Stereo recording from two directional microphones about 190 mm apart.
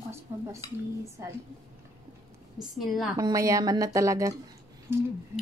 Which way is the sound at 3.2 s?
20° right (ahead or behind).